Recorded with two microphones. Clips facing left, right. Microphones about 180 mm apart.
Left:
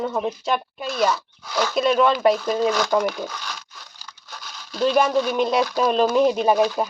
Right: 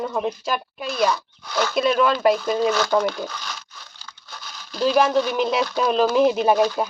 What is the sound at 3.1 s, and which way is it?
Speech, centre (ahead or behind).